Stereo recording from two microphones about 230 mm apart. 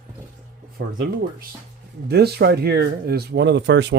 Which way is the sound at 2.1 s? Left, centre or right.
Right.